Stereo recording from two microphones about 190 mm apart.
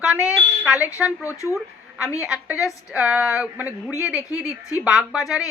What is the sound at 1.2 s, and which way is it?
Speech, 15° left (ahead or behind).